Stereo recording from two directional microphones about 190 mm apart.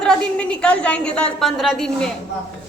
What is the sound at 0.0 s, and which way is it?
A woman's voice, 5° left (ahead or behind).